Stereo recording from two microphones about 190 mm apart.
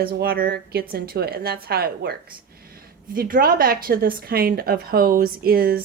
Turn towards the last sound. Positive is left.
turn(degrees=-50)  # may be behind; listen again after turning